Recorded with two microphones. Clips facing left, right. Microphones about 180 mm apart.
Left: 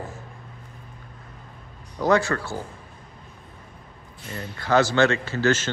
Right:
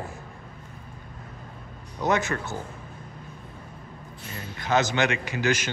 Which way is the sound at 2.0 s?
20° right (ahead or behind).